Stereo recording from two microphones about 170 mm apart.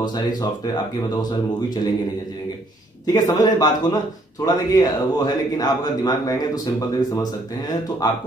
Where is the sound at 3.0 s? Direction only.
25° left (ahead or behind).